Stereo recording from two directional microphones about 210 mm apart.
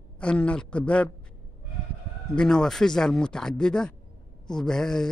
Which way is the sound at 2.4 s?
5° left (ahead or behind).